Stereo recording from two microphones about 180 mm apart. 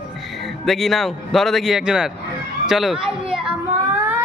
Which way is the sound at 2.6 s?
Centre (ahead or behind).